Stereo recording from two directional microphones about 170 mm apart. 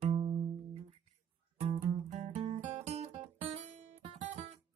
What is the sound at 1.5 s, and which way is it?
Music, 40° right (ahead or behind).